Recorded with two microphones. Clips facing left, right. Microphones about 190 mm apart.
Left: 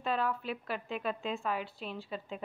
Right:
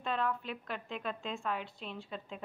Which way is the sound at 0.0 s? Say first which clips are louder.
Left 2 dB; 5° left (ahead or behind).